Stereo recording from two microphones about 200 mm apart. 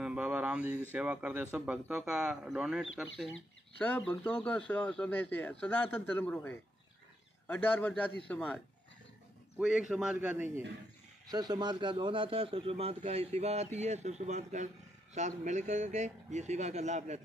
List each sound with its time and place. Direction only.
0.0 s a sound: 5° right (ahead or behind)
0.9 s speech: 5° right (ahead or behind)
3.8 s speech: 5° left (ahead or behind)
9.6 s speech: 5° right (ahead or behind)
11.2 s a man's voice: 20° right (ahead or behind)